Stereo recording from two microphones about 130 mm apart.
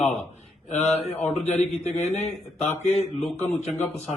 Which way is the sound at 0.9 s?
60° left (ahead or behind).